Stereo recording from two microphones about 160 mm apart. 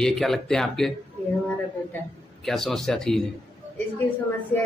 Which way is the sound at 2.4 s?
Centre (ahead or behind).